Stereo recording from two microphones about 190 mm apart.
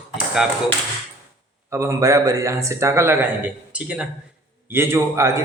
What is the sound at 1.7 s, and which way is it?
Speech, 15° right (ahead or behind).